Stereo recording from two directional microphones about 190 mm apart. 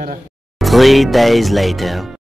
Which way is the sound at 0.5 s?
Centre (ahead or behind).